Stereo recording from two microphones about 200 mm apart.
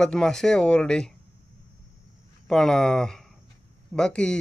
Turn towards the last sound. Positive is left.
turn(degrees=5)  # may be behind; listen again after turning